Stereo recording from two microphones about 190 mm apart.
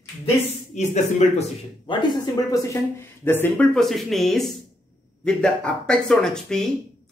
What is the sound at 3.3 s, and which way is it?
Speech, 10° left (ahead or behind).